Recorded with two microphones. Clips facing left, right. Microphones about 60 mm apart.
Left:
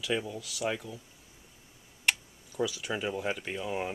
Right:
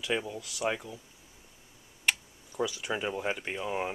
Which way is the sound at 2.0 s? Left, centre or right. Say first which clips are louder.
Even; centre.